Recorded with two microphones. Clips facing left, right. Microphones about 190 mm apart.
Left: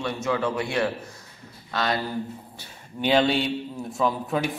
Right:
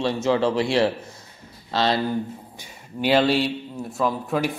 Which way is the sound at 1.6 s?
30° right (ahead or behind).